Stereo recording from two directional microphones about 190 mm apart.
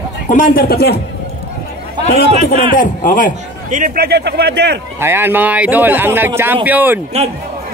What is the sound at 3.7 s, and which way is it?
A man's voice, 45° right (ahead or behind).